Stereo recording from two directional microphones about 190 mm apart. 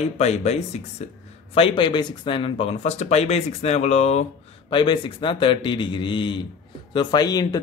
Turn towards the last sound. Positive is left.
turn(degrees=20)  # may be behind; listen again after turning